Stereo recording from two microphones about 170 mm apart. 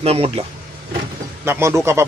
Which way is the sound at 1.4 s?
15° right (ahead or behind).